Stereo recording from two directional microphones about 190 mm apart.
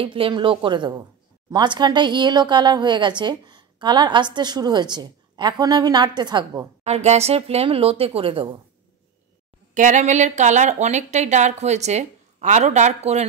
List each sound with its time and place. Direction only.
0.0 s speech: 25° right (ahead or behind)
6.8 s speech: 35° right (ahead or behind)
9.8 s speech: 40° right (ahead or behind)